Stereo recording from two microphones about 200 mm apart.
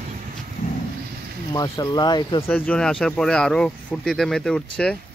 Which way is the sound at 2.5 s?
5° left (ahead or behind).